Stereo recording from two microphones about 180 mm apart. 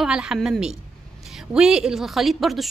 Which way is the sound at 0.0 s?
5° right (ahead or behind).